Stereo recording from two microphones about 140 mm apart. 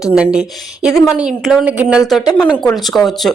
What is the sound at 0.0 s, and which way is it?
Speech, 5° right (ahead or behind).